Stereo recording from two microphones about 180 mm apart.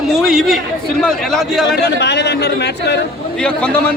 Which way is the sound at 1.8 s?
70° left (ahead or behind).